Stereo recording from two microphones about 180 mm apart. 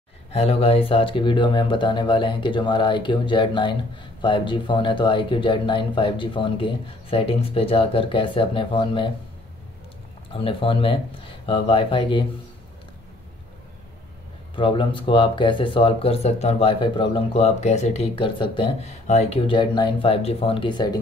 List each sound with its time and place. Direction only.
0.3 s speech: 35° left (ahead or behind)
10.3 s speech: 30° left (ahead or behind)
14.5 s speech: 25° left (ahead or behind)